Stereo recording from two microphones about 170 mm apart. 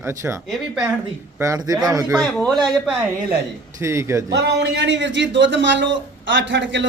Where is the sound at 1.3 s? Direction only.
20° right (ahead or behind).